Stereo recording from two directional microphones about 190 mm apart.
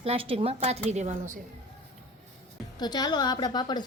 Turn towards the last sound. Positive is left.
turn(degrees=20)  # may be behind; listen again after turning